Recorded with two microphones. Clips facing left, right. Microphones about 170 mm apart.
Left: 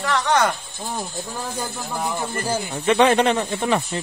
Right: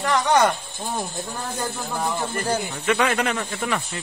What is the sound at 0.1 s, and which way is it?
Speech, centre (ahead or behind).